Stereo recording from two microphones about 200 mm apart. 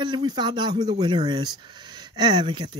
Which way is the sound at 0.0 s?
20° right (ahead or behind).